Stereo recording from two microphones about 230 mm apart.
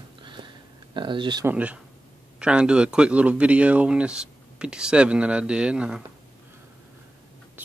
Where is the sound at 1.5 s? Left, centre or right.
Centre.